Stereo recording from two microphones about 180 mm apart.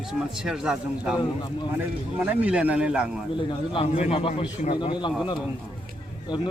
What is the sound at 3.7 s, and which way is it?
A man's voice, 30° left (ahead or behind).